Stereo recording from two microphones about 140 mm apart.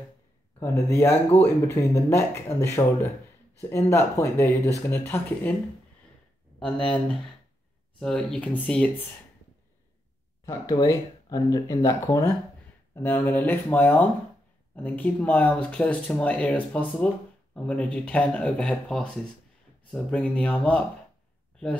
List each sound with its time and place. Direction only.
0.6 s speech: 20° left (ahead or behind)
6.6 s speech: 5° left (ahead or behind)
10.4 s speech: 25° left (ahead or behind); by 20.8 s 10° left (ahead or behind)